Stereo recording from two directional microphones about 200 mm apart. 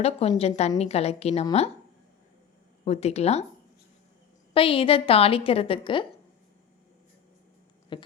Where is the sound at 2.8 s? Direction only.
30° left (ahead or behind).